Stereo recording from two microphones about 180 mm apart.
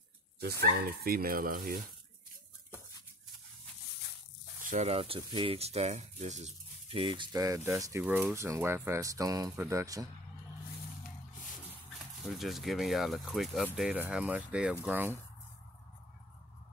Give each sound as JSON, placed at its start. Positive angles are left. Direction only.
{"t": 0.4, "sound": "speech", "side_deg": -60}
{"t": 1.0, "sound": "cutlery", "side_deg": -55}
{"t": 4.6, "sound": "speech", "side_deg": -40}
{"t": 12.3, "sound": "speech", "side_deg": 0}